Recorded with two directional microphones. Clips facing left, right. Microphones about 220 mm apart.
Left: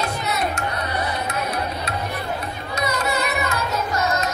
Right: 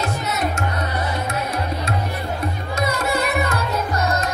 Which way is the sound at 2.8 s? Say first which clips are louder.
Right 2 dB; 50° right (ahead or behind).